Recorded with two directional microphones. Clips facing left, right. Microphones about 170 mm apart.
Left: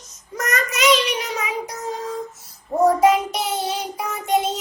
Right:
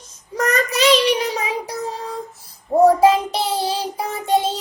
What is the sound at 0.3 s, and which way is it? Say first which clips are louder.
Child singing: right 5 dB; 30° right (ahead or behind).